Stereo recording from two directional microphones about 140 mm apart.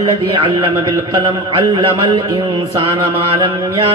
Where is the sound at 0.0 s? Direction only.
40° right (ahead or behind).